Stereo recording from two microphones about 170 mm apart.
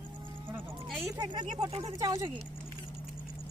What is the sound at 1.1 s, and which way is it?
Speech, 25° right (ahead or behind).